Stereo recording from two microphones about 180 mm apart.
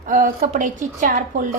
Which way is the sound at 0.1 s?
45° right (ahead or behind).